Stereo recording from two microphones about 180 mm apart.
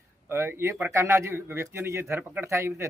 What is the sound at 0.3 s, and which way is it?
A man's voice, 15° right (ahead or behind).